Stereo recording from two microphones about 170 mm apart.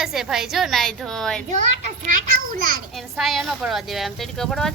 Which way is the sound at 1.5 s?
50° right (ahead or behind).